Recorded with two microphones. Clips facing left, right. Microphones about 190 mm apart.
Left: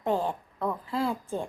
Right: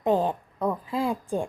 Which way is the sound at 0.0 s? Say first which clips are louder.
Right 4 dB; 20° right (ahead or behind).